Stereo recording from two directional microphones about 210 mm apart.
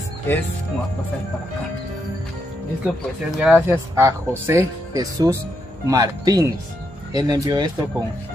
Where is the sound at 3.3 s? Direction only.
5° right (ahead or behind).